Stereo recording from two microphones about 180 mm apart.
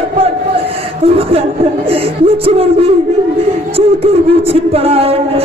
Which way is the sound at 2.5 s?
30° right (ahead or behind).